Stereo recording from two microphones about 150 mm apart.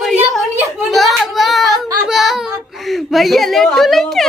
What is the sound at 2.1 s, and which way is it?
Speech, centre (ahead or behind).